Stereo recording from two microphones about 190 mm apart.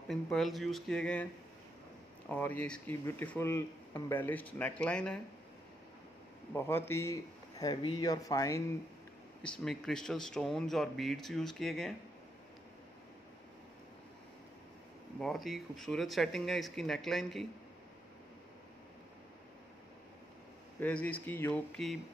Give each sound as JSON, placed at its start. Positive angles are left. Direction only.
{"t": 0.1, "sound": "speech", "side_deg": 0}
{"t": 6.5, "sound": "speech", "side_deg": 15}
{"t": 9.4, "sound": "speech", "side_deg": 5}
{"t": 15.1, "sound": "speech", "side_deg": 0}
{"t": 20.8, "sound": "speech", "side_deg": 10}